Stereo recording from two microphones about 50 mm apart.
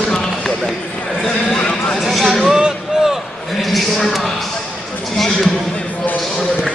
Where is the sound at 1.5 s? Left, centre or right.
Left.